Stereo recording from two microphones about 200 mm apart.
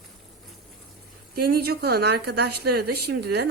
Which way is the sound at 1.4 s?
50° right (ahead or behind).